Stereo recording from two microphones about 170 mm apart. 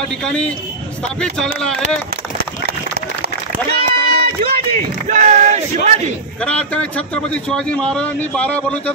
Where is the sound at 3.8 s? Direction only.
65° right (ahead or behind).